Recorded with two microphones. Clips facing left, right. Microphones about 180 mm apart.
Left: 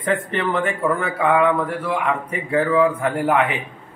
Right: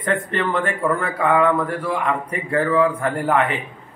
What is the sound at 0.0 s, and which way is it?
A man's voice, 10° left (ahead or behind).